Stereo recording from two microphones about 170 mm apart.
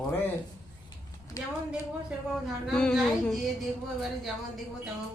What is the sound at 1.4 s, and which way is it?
Speech, 20° left (ahead or behind).